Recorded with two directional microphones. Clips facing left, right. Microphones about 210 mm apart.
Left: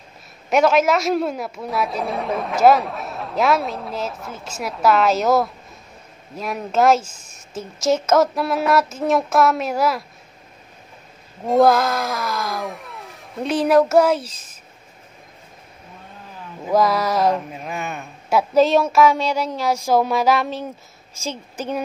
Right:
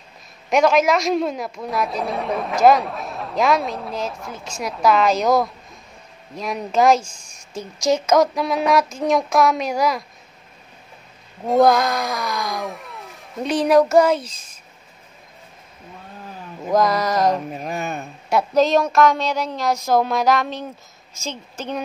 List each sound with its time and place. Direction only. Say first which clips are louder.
0.5 s a man's voice: even; 5° left (ahead or behind)
11.4 s a man's voice: even; centre (ahead or behind)
16.6 s a man's voice: even; 5° left (ahead or behind)
17.6 s a man's voice: right 3 dB; 35° right (ahead or behind)
18.3 s a woman's voice: left 1 dB; 5° left (ahead or behind)